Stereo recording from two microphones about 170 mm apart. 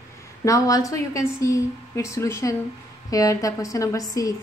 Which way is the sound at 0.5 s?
20° left (ahead or behind).